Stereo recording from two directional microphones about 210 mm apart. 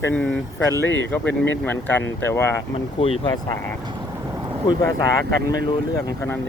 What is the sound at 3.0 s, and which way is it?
Speech, 25° left (ahead or behind).